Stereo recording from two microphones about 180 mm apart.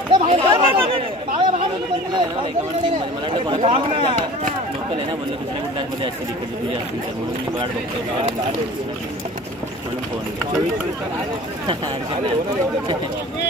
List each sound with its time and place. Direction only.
0.1 s speech: 30° right (ahead or behind)
2.8 s speech: 30° right (ahead or behind)